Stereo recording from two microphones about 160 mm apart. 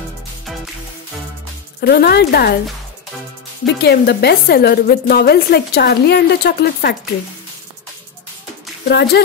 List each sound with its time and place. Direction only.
1.8 s speech: 80° left
3.6 s a woman's voice: 90° left
8.8 s a woman's voice: 90° left